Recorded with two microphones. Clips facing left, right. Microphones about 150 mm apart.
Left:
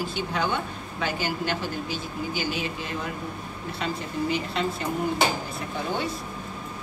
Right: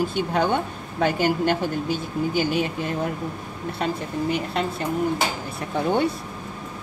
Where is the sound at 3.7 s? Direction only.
50° right (ahead or behind).